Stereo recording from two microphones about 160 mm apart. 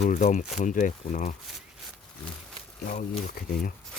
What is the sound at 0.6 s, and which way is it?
Speech, 55° left (ahead or behind).